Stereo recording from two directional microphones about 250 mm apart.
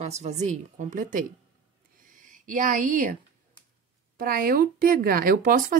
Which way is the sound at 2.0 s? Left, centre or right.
Right.